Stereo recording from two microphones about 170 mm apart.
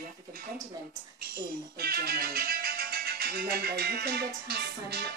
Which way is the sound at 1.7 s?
65° right (ahead or behind).